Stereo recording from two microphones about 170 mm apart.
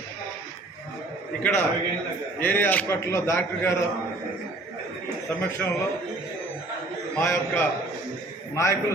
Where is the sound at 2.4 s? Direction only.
10° left (ahead or behind).